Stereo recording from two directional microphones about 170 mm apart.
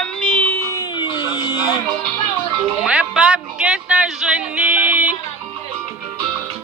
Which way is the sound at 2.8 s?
5° right (ahead or behind).